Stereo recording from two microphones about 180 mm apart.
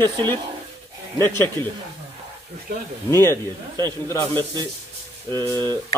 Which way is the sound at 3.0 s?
15° left (ahead or behind).